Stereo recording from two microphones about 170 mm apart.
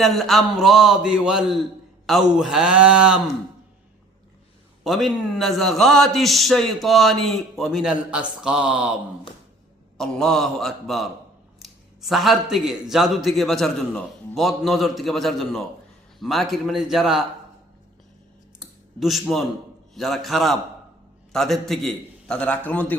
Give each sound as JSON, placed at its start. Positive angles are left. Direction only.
{"t": 0.0, "sound": "a man's voice", "side_deg": 0}
{"t": 4.8, "sound": "a man's voice", "side_deg": 0}
{"t": 10.0, "sound": "a man's voice", "side_deg": 5}
{"t": 18.6, "sound": "a sound", "side_deg": 0}
{"t": 19.9, "sound": "a man's voice", "side_deg": 0}